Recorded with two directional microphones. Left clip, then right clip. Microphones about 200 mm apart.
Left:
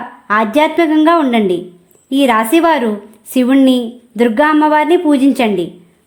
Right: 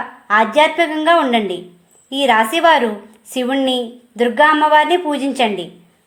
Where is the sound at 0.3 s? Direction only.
30° left (ahead or behind).